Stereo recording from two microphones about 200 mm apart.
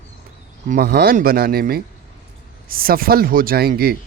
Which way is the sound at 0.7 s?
50° right (ahead or behind).